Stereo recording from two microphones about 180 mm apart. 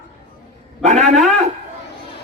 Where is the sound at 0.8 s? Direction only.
40° right (ahead or behind).